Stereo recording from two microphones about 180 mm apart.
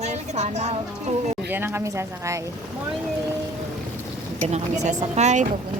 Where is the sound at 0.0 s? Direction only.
40° right (ahead or behind).